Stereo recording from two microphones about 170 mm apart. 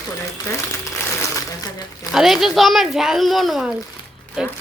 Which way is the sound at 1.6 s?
20° left (ahead or behind).